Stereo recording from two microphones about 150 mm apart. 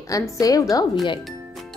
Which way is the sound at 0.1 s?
25° left (ahead or behind).